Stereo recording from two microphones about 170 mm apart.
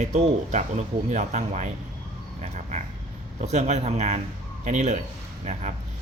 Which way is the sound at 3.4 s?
40° right (ahead or behind).